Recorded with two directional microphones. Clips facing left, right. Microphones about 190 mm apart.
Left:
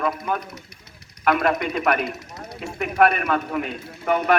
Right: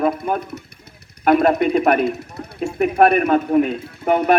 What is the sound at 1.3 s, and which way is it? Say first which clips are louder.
A man's voice: right 6 dB; 30° right (ahead or behind).